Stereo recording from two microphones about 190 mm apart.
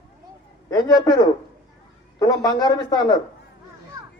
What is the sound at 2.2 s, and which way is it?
Speech, 20° left (ahead or behind).